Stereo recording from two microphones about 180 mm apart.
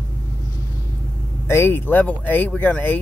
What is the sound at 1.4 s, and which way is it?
Speech, 15° left (ahead or behind).